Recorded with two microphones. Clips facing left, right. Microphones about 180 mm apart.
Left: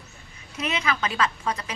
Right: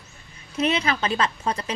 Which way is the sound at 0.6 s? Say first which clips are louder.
Right 4 dB; 30° right (ahead or behind).